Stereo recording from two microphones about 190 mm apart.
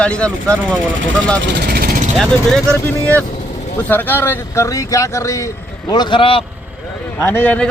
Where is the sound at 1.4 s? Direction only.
60° right (ahead or behind).